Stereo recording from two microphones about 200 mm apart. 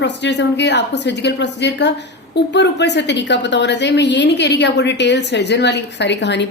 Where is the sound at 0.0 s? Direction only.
60° left (ahead or behind).